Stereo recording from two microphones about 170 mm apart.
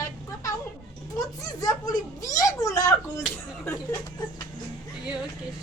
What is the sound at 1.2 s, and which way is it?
A woman's voice, 20° left (ahead or behind).